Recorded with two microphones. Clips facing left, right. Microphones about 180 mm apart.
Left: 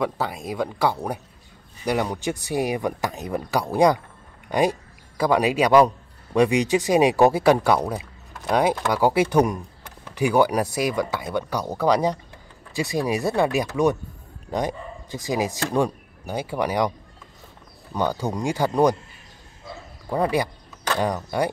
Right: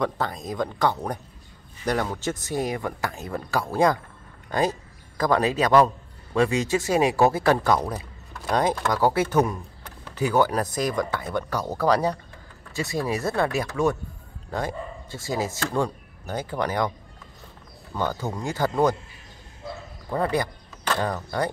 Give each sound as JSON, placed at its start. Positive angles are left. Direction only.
{"t": 0.0, "sound": "a man's voice", "side_deg": 10}
{"t": 17.9, "sound": "speech", "side_deg": 15}
{"t": 20.1, "sound": "speech", "side_deg": 15}